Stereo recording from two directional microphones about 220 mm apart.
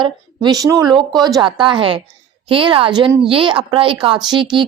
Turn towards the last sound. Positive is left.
turn(degrees=-20)  # may be behind; listen again after turning